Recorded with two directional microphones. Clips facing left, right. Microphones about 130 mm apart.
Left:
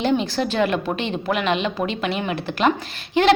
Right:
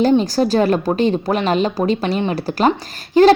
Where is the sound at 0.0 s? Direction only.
40° right (ahead or behind).